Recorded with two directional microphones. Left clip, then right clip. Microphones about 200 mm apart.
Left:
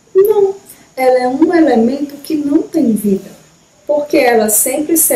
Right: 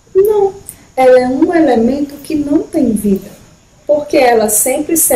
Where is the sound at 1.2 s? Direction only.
Centre (ahead or behind).